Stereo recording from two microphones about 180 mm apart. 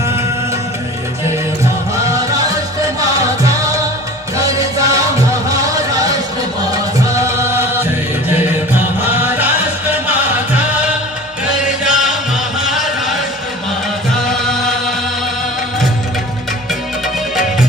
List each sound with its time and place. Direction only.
3.2 s music: 20° right (ahead or behind)
7.2 s music: 15° right (ahead or behind)
11.8 s music: 5° right (ahead or behind)
12.6 s a sound: centre (ahead or behind)